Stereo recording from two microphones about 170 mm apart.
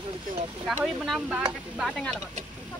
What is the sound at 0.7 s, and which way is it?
Speech, centre (ahead or behind).